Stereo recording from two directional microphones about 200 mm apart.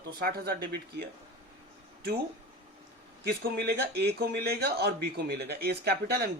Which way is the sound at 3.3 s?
50° right (ahead or behind).